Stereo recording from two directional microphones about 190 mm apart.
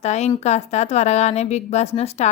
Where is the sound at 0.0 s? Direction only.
35° left (ahead or behind).